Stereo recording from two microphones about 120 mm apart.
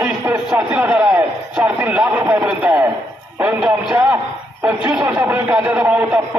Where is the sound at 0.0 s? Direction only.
15° right (ahead or behind).